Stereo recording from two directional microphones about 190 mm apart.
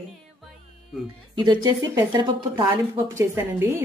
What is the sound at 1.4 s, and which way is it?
A woman's voice, 25° right (ahead or behind).